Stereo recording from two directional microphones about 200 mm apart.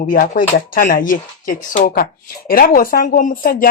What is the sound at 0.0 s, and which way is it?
Speech, 40° left (ahead or behind).